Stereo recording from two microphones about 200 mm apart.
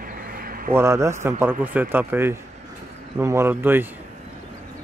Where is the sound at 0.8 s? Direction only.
15° right (ahead or behind).